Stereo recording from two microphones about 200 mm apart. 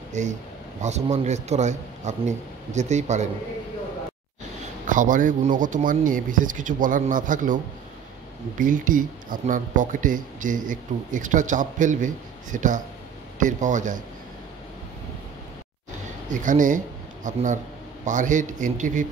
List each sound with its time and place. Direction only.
0.2 s speech: 35° right (ahead or behind)
4.8 s speech: 40° right (ahead or behind)
16.3 s speech: 40° right (ahead or behind)